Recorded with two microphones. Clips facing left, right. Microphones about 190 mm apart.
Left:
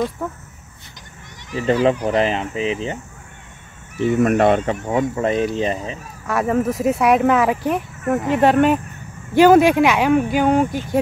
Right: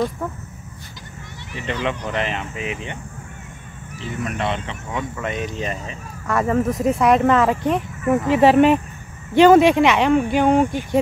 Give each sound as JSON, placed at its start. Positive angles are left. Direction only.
{"t": 0.2, "sound": "speech", "side_deg": 5}
{"t": 1.5, "sound": "speech", "side_deg": 35}
{"t": 4.0, "sound": "speech", "side_deg": 50}
{"t": 6.2, "sound": "speech", "side_deg": 5}